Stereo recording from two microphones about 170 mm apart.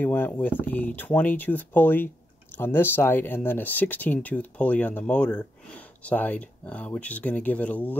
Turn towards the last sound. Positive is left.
turn(degrees=10)  # may be behind; listen again after turning